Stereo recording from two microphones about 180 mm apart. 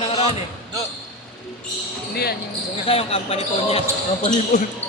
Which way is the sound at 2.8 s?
30° left (ahead or behind).